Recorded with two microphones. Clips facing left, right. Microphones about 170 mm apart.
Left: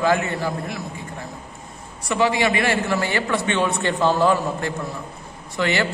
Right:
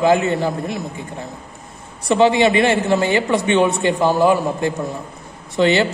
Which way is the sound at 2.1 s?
25° right (ahead or behind).